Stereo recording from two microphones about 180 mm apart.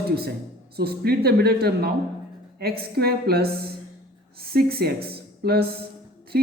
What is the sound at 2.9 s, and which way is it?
A woman's voice, 60° right (ahead or behind).